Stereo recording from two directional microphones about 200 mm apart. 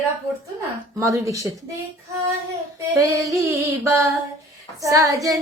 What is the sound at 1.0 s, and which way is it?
Female singing, 15° right (ahead or behind).